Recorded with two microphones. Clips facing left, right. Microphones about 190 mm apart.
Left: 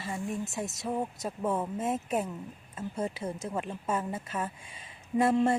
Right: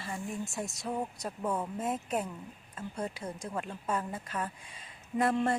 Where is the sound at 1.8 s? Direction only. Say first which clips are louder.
Left 3 dB; 25° left (ahead or behind).